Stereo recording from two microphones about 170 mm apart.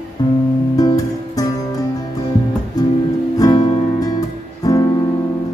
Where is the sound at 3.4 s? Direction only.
20° left (ahead or behind).